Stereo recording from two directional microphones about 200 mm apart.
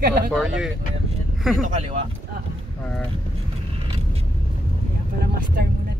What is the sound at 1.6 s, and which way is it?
Speech, 30° right (ahead or behind).